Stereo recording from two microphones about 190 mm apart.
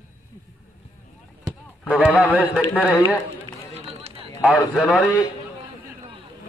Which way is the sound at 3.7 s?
35° right (ahead or behind).